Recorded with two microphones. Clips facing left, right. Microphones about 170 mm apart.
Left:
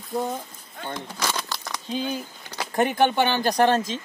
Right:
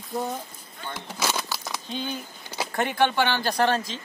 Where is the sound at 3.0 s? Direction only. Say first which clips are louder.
Even; 20° left (ahead or behind).